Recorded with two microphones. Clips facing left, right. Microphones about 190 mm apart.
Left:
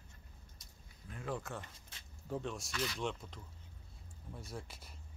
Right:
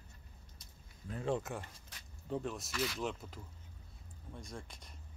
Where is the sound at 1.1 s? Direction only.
25° right (ahead or behind).